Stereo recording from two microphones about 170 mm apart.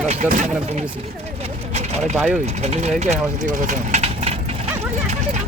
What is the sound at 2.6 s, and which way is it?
Speech, 40° right (ahead or behind).